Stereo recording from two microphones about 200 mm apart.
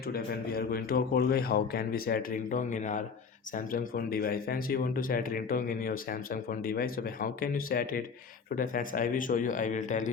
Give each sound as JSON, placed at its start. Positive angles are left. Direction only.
{"t": 0.1, "sound": "speech", "side_deg": 50}